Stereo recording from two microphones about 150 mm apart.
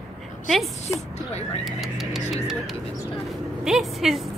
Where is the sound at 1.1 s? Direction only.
45° left (ahead or behind).